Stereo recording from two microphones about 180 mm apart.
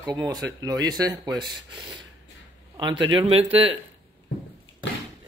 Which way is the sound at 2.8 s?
25° right (ahead or behind).